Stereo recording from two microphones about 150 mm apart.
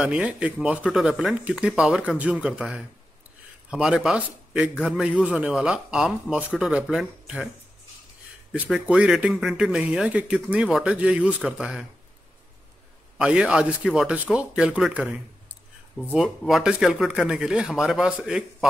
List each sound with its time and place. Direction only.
0.0 s a man's voice: 5° right (ahead or behind)
8.6 s speech: 5° right (ahead or behind)
13.2 s a man's voice: 5° right (ahead or behind)